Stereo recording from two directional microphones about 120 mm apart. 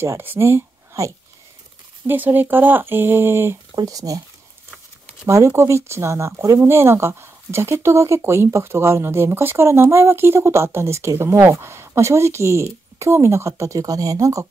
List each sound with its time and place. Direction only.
0.0 s speech: 20° right (ahead or behind)
3.7 s speech: 30° right (ahead or behind)
5.2 s speech: 25° right (ahead or behind)